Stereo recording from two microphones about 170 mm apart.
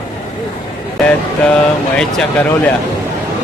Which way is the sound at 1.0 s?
5° left (ahead or behind).